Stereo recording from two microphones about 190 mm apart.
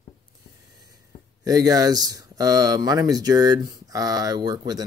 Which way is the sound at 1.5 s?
20° right (ahead or behind).